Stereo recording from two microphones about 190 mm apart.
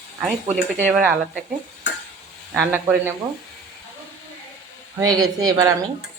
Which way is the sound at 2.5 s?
10° right (ahead or behind).